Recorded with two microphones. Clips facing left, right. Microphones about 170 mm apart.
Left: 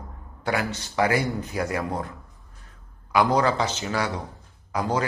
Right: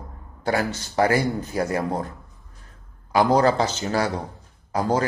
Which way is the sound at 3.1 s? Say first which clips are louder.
Right 3 dB; 35° right (ahead or behind).